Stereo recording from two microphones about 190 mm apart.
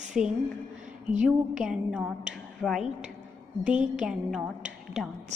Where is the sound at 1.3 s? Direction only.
5° right (ahead or behind).